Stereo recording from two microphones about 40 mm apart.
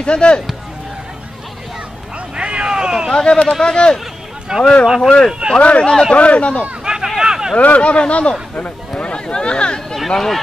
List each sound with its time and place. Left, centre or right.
0.0 s speech: left
2.1 s vehicle: right
3.1 s speech: left
4.5 s speech: right
5.6 s speech: left
5.9 s speech: centre
6.1 s speech: left
6.8 s a sound: centre
7.5 s speech: left
9.9 s speech: centre